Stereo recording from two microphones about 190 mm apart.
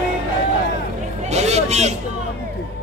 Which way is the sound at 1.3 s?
35° right (ahead or behind).